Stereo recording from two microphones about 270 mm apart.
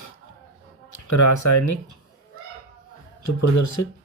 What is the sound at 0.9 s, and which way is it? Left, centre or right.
Speech, left.